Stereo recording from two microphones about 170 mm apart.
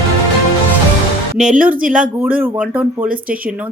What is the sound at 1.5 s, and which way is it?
A woman's voice, 10° right (ahead or behind).